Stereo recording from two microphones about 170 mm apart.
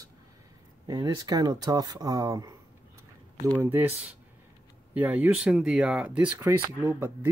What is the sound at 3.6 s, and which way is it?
Speech, 10° right (ahead or behind).